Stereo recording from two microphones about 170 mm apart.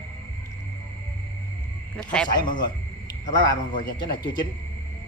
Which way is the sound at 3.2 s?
25° left (ahead or behind).